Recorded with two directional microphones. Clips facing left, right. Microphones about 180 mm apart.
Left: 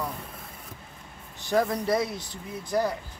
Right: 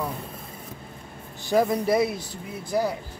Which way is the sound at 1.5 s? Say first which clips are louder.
Right 3 dB; 10° right (ahead or behind).